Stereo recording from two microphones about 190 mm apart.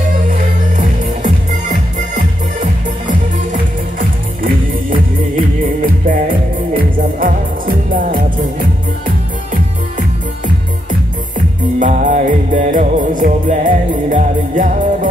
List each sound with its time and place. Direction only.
1.2 s music: 40° right (ahead or behind)
4.4 s music: 45° right (ahead or behind)
10.9 s music: 40° right (ahead or behind)